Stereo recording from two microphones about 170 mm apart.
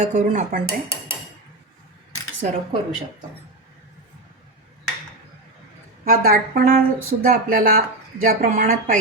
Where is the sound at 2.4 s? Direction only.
50° right (ahead or behind).